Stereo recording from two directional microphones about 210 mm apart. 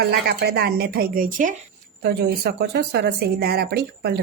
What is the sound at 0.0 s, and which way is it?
A woman's voice, 50° right (ahead or behind).